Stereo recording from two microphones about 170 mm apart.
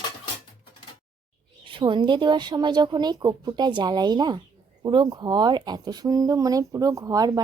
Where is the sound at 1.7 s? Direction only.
30° right (ahead or behind).